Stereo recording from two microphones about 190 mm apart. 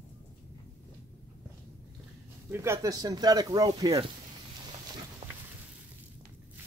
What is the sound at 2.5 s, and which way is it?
Speech, 15° right (ahead or behind).